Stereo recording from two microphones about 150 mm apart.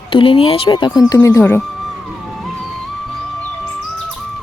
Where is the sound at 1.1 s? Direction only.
20° left (ahead or behind).